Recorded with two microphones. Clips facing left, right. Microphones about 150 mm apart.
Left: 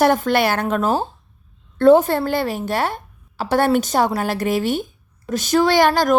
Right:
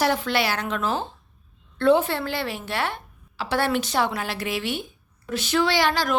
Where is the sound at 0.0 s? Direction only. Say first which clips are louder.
Left 7 dB; 50° left (ahead or behind).